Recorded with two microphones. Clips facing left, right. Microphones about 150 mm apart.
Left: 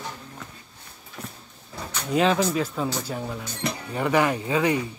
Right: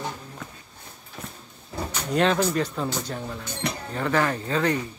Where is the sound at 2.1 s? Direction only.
5° left (ahead or behind).